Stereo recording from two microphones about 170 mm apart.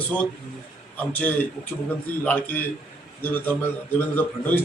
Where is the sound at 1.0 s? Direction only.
10° left (ahead or behind).